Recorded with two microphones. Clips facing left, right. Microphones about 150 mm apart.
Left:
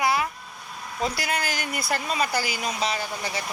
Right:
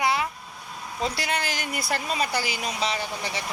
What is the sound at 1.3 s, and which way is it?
Speech, 40° left (ahead or behind).